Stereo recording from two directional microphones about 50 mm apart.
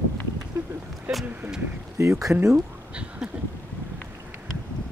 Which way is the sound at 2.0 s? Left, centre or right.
Right.